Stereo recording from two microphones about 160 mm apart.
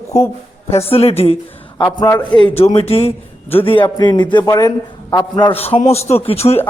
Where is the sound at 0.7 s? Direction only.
40° left (ahead or behind).